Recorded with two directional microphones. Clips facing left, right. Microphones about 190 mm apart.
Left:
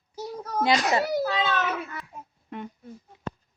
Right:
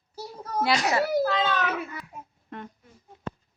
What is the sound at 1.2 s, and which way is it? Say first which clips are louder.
A child's voice: right 1 dB; 5° left (ahead or behind).